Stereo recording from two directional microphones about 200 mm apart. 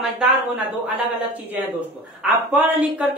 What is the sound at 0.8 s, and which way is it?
A woman's voice, 10° right (ahead or behind).